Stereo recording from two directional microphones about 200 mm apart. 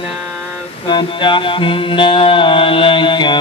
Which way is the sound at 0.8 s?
25° left (ahead or behind).